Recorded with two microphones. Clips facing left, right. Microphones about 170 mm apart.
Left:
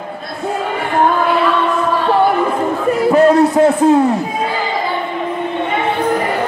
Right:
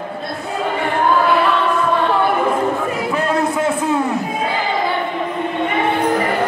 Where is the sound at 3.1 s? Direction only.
40° left (ahead or behind).